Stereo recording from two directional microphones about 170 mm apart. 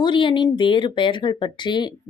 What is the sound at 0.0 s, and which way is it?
Speech, 30° left (ahead or behind).